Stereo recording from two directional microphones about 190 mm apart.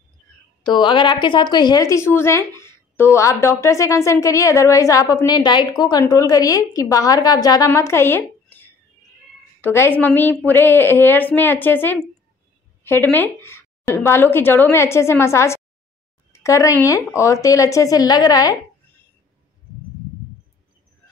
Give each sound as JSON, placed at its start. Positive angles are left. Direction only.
{"t": 0.7, "sound": "speech", "side_deg": 25}